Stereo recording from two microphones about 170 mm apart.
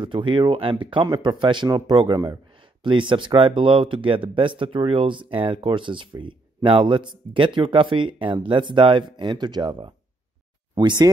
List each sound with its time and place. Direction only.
0.0 s speech: 30° right (ahead or behind)